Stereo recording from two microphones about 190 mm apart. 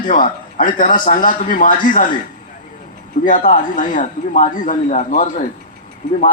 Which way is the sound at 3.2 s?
45° left (ahead or behind).